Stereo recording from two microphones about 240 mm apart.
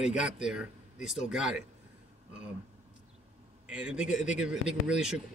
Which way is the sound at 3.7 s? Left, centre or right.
Centre.